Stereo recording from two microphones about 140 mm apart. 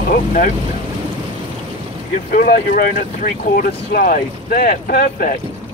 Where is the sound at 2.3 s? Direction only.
85° left.